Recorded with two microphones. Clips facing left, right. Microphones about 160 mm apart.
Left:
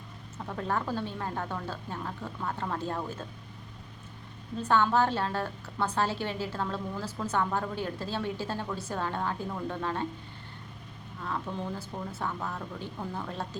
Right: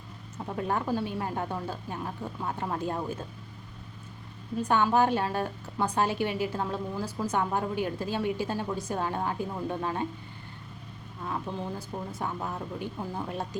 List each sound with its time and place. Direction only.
0.4 s a woman's voice: 15° right (ahead or behind)
4.5 s a woman's voice: 15° right (ahead or behind)
11.5 s a woman's voice: 15° right (ahead or behind)